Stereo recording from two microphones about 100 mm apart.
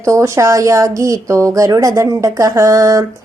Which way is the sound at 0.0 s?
30° right (ahead or behind).